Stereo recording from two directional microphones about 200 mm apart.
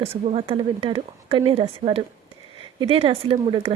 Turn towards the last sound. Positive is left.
turn(degrees=-25)  # may be behind; listen again after turning